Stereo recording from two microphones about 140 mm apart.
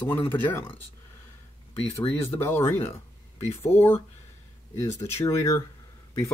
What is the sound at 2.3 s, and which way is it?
Speech, 15° left (ahead or behind).